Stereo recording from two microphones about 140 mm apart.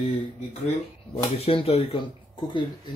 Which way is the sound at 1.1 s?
45° left (ahead or behind).